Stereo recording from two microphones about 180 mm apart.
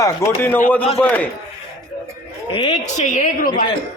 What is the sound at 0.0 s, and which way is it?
Speech, 15° left (ahead or behind).